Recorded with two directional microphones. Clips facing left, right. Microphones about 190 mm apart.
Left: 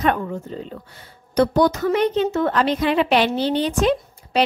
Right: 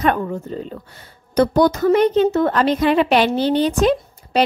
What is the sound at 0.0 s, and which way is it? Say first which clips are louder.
A woman's voice: right 2 dB; 45° right (ahead or behind).